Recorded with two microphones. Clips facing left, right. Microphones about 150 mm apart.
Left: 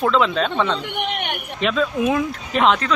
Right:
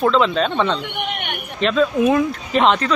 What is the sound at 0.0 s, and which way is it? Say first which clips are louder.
Speech: right 2 dB; centre (ahead or behind).